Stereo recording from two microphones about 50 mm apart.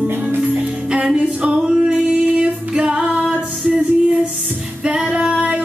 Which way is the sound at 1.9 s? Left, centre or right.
Centre.